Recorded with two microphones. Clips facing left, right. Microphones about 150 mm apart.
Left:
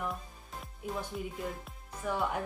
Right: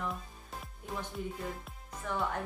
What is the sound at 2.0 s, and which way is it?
Speech, 10° left (ahead or behind).